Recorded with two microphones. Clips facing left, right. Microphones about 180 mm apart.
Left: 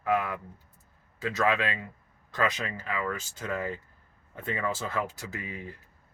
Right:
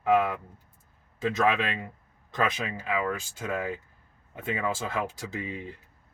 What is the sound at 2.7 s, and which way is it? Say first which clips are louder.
Speech: right 3 dB; 15° right (ahead or behind).